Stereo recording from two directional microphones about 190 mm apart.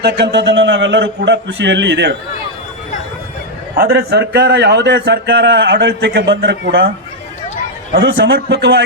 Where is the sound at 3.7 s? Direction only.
55° right (ahead or behind).